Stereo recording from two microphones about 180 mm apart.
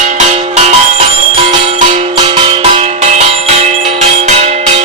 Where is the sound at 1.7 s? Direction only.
35° right (ahead or behind).